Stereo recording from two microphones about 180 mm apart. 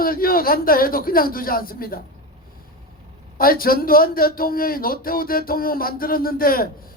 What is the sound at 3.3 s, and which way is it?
A man's voice, 55° left (ahead or behind).